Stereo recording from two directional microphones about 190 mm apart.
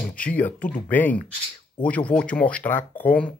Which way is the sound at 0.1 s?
5° left (ahead or behind).